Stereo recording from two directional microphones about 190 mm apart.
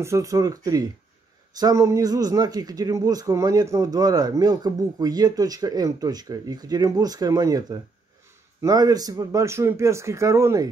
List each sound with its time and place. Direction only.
0.0 s speech: 15° right (ahead or behind)